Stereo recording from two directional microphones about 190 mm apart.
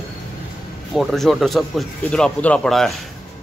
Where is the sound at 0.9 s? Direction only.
Centre (ahead or behind).